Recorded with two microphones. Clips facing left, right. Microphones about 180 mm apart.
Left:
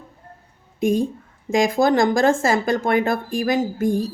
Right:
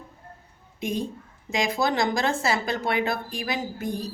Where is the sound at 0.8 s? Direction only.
45° left (ahead or behind).